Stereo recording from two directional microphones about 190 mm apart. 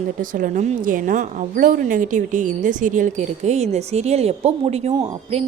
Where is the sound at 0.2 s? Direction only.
45° right (ahead or behind).